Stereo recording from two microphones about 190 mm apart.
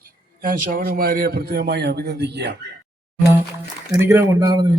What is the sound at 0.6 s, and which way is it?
A man's voice, 50° right (ahead or behind).